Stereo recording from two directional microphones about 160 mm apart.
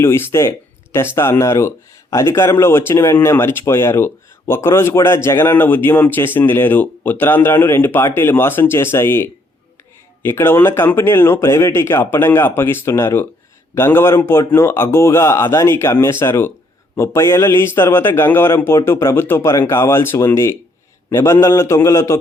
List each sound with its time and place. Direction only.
0.0 s speech: 15° left (ahead or behind)